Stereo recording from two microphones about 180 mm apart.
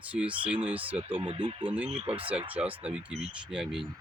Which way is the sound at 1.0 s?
30° right (ahead or behind).